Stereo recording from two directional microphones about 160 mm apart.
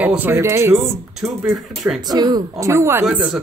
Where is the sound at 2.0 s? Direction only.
25° right (ahead or behind); by 3.4 s 10° right (ahead or behind).